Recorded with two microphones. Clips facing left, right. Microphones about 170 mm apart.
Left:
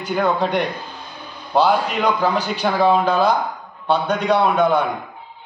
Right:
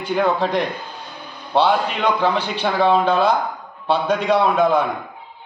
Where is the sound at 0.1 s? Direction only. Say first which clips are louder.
Even; centre (ahead or behind).